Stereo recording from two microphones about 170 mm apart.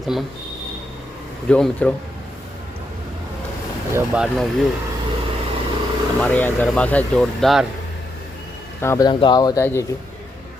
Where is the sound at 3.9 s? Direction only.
5° right (ahead or behind).